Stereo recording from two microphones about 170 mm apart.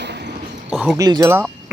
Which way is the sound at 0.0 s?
85° right.